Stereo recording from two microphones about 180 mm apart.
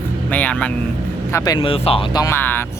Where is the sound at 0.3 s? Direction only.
10° left (ahead or behind).